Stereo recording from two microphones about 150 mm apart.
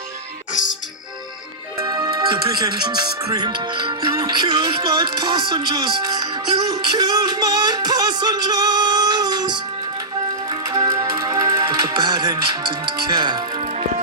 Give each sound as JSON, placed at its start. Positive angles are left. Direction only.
{"t": 1.8, "sound": "music", "side_deg": -20}
{"t": 2.2, "sound": "speech", "side_deg": -30}
{"t": 10.5, "sound": "music", "side_deg": -30}